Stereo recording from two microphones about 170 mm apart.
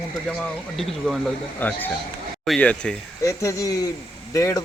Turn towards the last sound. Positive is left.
turn(degrees=20)  # may be behind; listen again after turning